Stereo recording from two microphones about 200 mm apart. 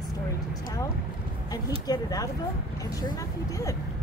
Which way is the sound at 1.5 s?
20° left (ahead or behind).